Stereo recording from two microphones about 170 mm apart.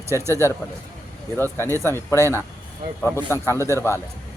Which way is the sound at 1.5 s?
15° left (ahead or behind).